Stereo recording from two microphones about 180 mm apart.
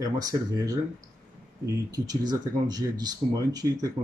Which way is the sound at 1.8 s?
20° right (ahead or behind).